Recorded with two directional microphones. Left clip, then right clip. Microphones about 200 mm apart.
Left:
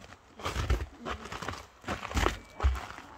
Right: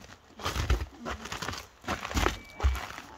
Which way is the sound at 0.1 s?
10° right (ahead or behind).